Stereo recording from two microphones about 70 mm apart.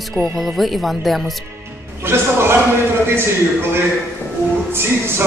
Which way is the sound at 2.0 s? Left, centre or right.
Right.